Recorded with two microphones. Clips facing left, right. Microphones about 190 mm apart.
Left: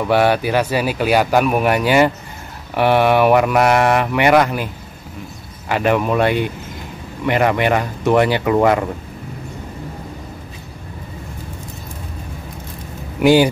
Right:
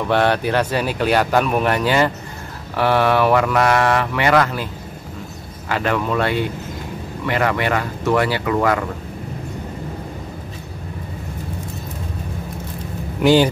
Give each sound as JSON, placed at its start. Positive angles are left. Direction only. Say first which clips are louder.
{"t": 0.0, "sound": "speech", "louder": "left 2 dB", "side_deg": 10}
{"t": 5.7, "sound": "speech", "louder": "left 4 dB", "side_deg": 15}
{"t": 13.2, "sound": "speech", "louder": "left 2 dB", "side_deg": 10}